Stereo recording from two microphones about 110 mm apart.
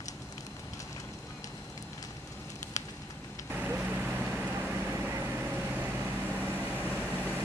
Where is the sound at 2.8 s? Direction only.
30° left (ahead or behind).